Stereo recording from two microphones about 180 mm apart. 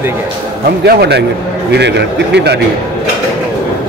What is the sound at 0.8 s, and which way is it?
Speech, 65° right (ahead or behind).